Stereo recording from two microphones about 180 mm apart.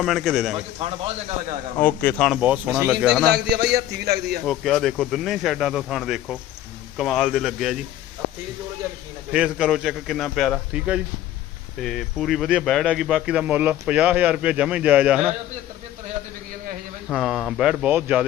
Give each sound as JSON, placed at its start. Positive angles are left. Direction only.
{"t": 0.0, "sound": "speech", "side_deg": 0}
{"t": 0.5, "sound": "a man's voice", "side_deg": -30}
{"t": 1.8, "sound": "speech", "side_deg": 10}
{"t": 2.4, "sound": "speech", "side_deg": -5}
{"t": 3.2, "sound": "a man's voice", "side_deg": -65}
{"t": 4.4, "sound": "speech", "side_deg": 0}
{"t": 9.3, "sound": "speech", "side_deg": -5}
{"t": 17.1, "sound": "speech", "side_deg": 0}